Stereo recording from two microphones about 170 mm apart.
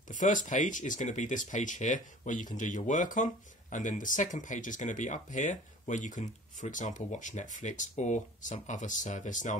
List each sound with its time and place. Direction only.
0.1 s speech: 50° left (ahead or behind)